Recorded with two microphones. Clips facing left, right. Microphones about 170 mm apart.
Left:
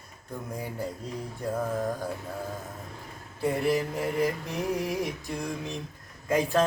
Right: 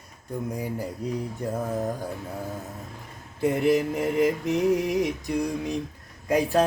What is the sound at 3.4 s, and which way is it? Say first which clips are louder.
Mantra: right 4 dB; 20° right (ahead or behind).